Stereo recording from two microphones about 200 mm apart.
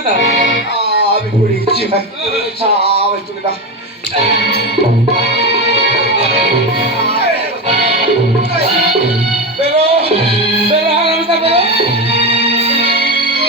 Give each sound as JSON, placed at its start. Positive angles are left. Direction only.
{"t": 5.7, "sound": "music", "side_deg": -35}
{"t": 7.7, "sound": "music", "side_deg": -35}
{"t": 9.6, "sound": "music", "side_deg": -35}